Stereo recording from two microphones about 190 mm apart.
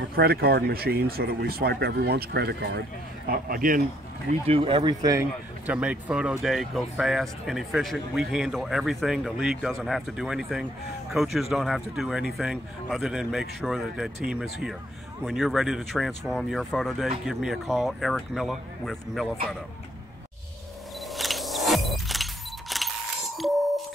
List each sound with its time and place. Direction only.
0.1 s a man's voice: 55° right (ahead or behind)
4.3 s speech: 30° right (ahead or behind)
5.7 s speech: 5° right (ahead or behind)
21.1 s vehicle: centre (ahead or behind)
23.3 s a sound: centre (ahead or behind)